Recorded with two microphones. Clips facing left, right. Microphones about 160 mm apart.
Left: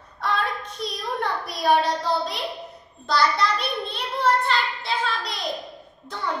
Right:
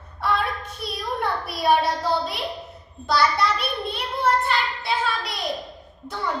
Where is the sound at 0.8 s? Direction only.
5° right (ahead or behind).